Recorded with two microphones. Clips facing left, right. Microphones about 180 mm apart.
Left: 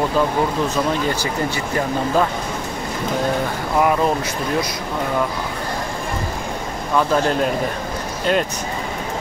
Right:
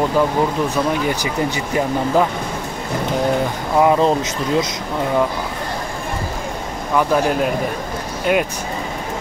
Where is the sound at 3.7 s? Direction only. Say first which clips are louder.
Right 3 dB; 25° right (ahead or behind).